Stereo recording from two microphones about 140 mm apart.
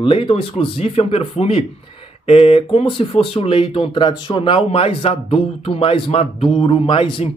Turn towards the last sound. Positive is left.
turn(degrees=40)  # may be behind; listen again after turning